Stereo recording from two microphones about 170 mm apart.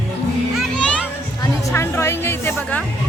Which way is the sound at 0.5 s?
Centre (ahead or behind).